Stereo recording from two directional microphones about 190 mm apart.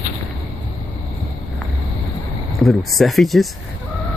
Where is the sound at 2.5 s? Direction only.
Centre (ahead or behind).